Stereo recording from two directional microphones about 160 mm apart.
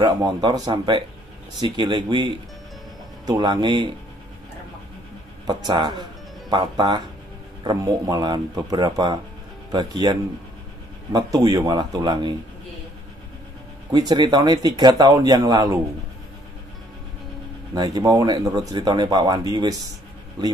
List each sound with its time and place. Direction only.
0.0 s speech: 25° right (ahead or behind)
5.5 s speech: 25° right (ahead or behind)
13.9 s speech: 25° right (ahead or behind)
17.7 s speech: 25° right (ahead or behind)